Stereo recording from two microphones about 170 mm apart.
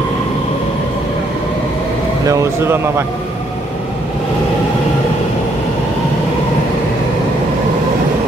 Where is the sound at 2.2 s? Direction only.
15° right (ahead or behind).